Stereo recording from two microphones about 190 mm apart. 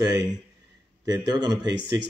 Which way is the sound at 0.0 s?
20° right (ahead or behind).